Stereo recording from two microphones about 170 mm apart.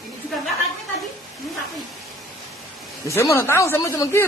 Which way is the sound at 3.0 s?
15° left (ahead or behind).